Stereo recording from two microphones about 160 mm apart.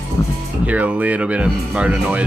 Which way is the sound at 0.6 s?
10° right (ahead or behind).